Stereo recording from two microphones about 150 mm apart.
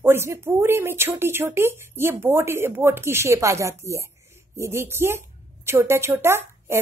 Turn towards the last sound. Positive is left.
turn(degrees=-15)  # may be behind; listen again after turning